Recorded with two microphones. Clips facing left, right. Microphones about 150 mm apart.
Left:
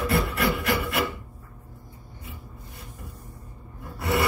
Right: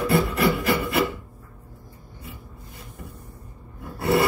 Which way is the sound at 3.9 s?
30° right (ahead or behind).